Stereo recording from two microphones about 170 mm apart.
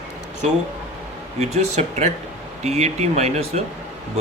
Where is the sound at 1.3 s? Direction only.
40° right (ahead or behind).